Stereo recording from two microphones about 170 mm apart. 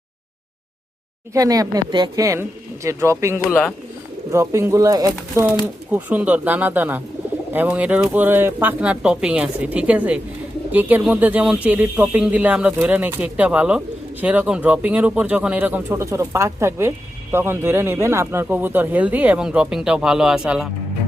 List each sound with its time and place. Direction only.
1.3 s speech: 20° right (ahead or behind); by 20.7 s 5° right (ahead or behind)